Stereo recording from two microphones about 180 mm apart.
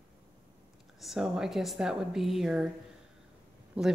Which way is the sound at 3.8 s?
5° right (ahead or behind).